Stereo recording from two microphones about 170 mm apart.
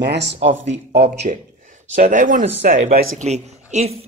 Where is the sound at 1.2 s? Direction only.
40° right (ahead or behind).